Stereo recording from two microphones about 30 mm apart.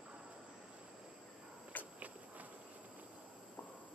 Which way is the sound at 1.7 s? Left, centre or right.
Left.